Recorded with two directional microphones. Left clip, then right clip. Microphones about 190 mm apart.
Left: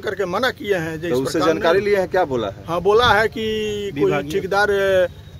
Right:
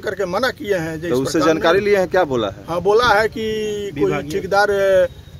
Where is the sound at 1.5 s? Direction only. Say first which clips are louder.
Right 2 dB; 45° right (ahead or behind).